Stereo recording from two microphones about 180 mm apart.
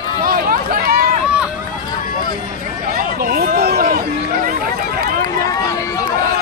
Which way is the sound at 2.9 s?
50° right (ahead or behind).